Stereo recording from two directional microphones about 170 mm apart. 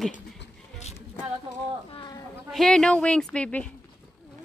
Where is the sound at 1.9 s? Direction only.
25° left (ahead or behind).